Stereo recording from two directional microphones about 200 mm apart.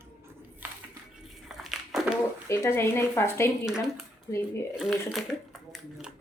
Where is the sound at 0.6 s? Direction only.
10° right (ahead or behind).